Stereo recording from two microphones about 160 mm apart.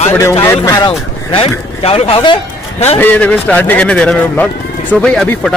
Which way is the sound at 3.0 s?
10° left (ahead or behind).